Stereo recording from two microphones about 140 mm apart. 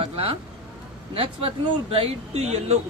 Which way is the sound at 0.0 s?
40° right (ahead or behind).